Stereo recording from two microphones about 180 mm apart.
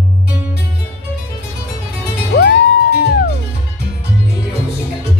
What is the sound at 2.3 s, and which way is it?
Music, 65° left (ahead or behind).